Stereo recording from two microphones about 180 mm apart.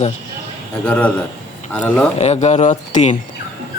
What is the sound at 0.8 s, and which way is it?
Speech, 5° left (ahead or behind).